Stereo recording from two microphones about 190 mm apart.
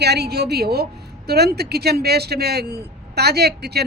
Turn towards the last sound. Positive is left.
turn(degrees=-60)  # may be behind; listen again after turning